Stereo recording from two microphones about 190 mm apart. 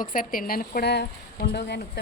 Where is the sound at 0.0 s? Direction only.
45° left (ahead or behind).